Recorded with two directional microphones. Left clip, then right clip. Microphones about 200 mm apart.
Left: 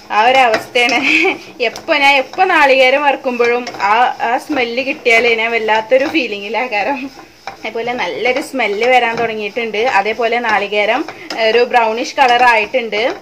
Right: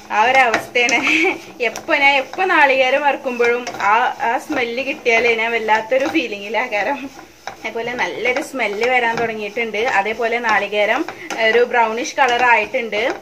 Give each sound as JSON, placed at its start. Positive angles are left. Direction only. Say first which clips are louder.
{"t": 0.1, "sound": "speech", "louder": "left 3 dB", "side_deg": 35}